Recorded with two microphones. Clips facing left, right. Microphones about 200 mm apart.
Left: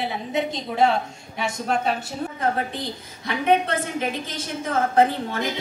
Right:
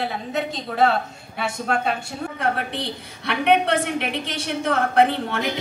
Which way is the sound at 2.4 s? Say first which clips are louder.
Even; 70° right (ahead or behind).